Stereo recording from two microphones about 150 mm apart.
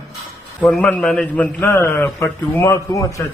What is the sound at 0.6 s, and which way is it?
A man's voice, 5° left (ahead or behind).